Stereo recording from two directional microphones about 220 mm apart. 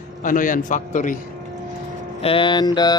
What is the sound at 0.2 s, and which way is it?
A man's voice, 35° left (ahead or behind).